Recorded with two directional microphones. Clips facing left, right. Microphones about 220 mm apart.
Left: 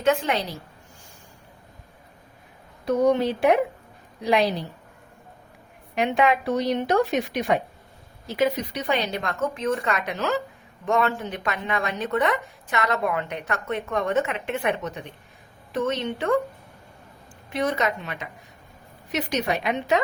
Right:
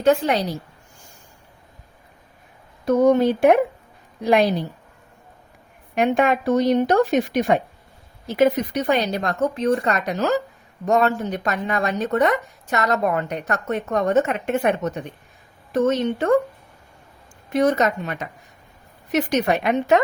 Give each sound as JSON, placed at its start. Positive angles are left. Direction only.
{"t": 0.0, "sound": "speech", "side_deg": -35}
{"t": 2.8, "sound": "a woman's voice", "side_deg": -45}
{"t": 5.9, "sound": "a woman's voice", "side_deg": -50}
{"t": 17.5, "sound": "a woman's voice", "side_deg": -45}